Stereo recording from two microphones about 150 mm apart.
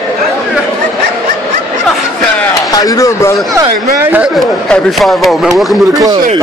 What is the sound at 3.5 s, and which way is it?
Speech, 20° right (ahead or behind).